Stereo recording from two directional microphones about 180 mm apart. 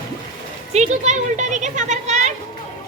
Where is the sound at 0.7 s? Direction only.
40° right (ahead or behind).